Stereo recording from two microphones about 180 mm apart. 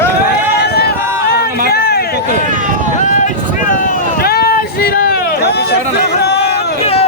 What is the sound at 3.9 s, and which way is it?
Run, 55° left (ahead or behind).